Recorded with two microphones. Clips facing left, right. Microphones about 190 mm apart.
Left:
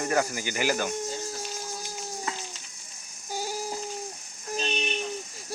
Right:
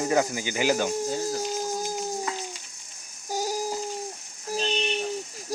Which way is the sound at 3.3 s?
40° right (ahead or behind).